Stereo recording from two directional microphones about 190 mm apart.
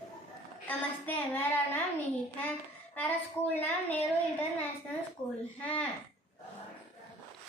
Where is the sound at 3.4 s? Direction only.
10° left (ahead or behind).